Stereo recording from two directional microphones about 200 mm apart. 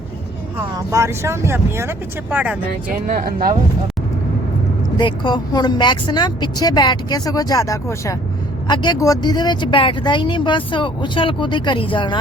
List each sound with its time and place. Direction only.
0.8 s speech: 15° right (ahead or behind)
2.9 s speech: 45° right (ahead or behind)
4.9 s speech: 20° left (ahead or behind)